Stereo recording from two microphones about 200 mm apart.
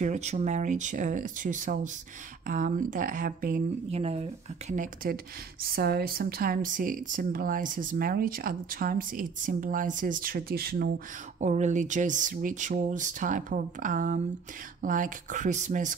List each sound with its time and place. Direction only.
0.0 s speech: 35° right (ahead or behind)
3.9 s speech: 30° right (ahead or behind); by 10.9 s 50° right (ahead or behind)
11.3 s speech: 35° right (ahead or behind)